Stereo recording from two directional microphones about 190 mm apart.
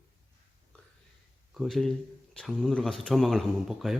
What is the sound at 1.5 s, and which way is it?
Speech, centre (ahead or behind).